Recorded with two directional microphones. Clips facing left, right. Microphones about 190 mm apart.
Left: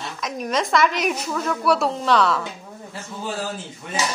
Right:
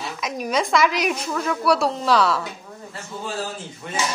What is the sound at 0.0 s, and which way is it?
A woman's voice, 5° right (ahead or behind).